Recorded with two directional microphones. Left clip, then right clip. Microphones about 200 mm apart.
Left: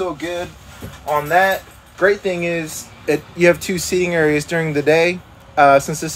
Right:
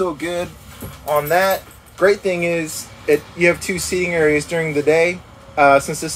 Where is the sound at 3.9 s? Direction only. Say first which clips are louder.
Even; 15° left (ahead or behind).